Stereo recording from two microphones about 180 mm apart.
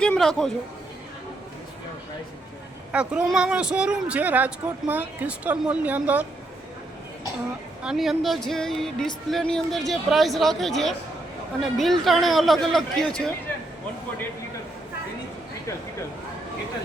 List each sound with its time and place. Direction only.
0.0 s a sound: 5° left (ahead or behind)
2.9 s speech: 5° right (ahead or behind)
7.8 s speech: centre (ahead or behind)